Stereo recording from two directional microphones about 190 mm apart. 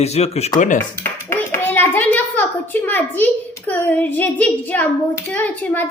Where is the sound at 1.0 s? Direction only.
10° left (ahead or behind).